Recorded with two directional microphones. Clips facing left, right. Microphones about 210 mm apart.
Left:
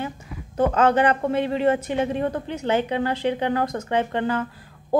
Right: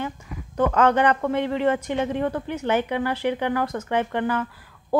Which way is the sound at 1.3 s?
15° left (ahead or behind).